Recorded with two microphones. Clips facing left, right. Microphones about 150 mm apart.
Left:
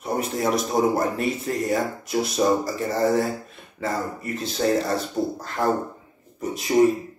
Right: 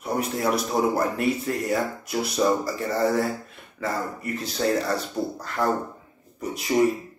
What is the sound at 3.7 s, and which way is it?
Speech, 25° left (ahead or behind).